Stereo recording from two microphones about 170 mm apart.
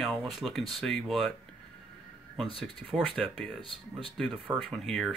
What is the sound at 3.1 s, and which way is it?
Speech, 5° left (ahead or behind).